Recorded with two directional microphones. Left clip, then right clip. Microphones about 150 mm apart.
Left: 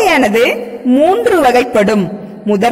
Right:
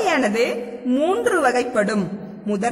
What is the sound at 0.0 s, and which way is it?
Speech, 20° left (ahead or behind).